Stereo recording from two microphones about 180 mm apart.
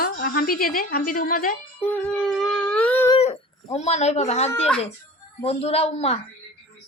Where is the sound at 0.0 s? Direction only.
55° left (ahead or behind).